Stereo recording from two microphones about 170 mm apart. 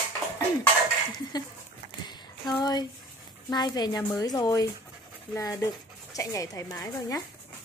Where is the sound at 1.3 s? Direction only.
25° left (ahead or behind).